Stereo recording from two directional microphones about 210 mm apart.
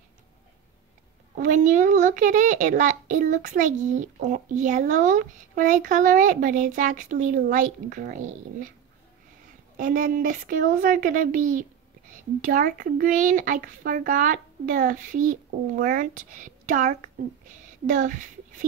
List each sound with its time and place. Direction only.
1.4 s a child's voice: 35° right (ahead or behind)
9.8 s a child's voice: 40° right (ahead or behind)